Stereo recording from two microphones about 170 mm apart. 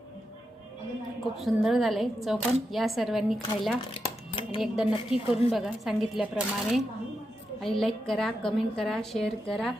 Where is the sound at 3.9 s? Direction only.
30° left (ahead or behind).